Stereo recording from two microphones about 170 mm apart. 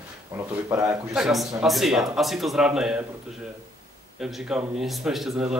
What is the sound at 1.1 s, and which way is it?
Speech, centre (ahead or behind).